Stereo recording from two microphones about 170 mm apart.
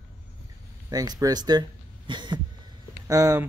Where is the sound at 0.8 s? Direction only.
20° right (ahead or behind).